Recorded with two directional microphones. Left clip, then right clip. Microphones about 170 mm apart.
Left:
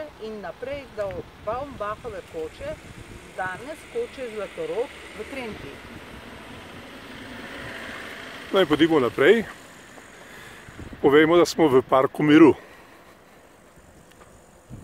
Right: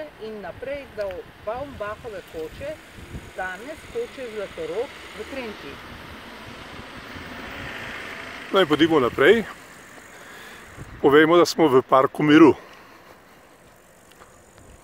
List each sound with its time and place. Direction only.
0.2 s speech: 25° right (ahead or behind)
3.3 s speech: 25° right (ahead or behind)
7.3 s vehicle: 30° left (ahead or behind)
8.5 s speech: centre (ahead or behind)
11.0 s speech: centre (ahead or behind)